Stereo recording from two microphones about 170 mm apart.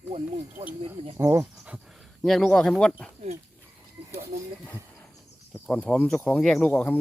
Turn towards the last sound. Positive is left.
turn(degrees=10)  # may be behind; listen again after turning